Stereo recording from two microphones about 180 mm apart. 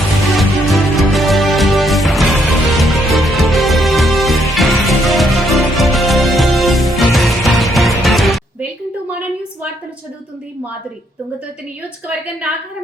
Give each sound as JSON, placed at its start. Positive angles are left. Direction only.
{"t": 0.3, "sound": "music", "side_deg": 0}
{"t": 12.0, "sound": "a woman's voice", "side_deg": -10}